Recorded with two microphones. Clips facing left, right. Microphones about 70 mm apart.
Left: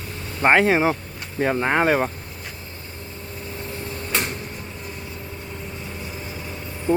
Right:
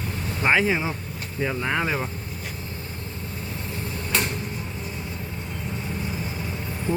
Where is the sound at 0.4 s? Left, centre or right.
Left.